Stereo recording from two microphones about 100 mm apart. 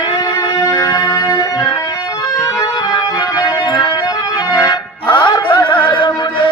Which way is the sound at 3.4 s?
40° left (ahead or behind).